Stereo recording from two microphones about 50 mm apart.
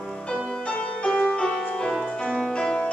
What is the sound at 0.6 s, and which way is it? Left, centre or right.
Music, left.